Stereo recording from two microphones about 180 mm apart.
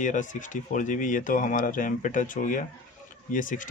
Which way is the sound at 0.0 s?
45° left (ahead or behind).